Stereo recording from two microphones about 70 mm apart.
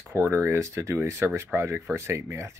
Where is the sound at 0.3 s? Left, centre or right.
Right.